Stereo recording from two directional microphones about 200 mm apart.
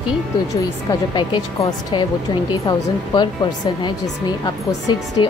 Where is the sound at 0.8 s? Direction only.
20° left (ahead or behind).